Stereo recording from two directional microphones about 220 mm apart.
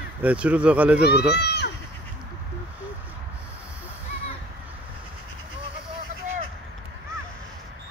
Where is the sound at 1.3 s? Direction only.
50° left (ahead or behind).